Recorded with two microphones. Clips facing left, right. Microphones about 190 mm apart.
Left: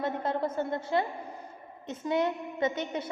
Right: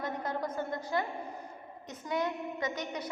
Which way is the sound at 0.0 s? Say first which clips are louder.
Left 5 dB; 25° left (ahead or behind).